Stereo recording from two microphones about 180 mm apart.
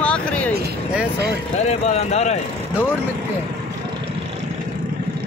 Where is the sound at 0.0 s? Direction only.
5° left (ahead or behind).